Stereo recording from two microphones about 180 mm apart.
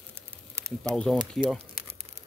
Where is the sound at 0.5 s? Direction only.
15° right (ahead or behind).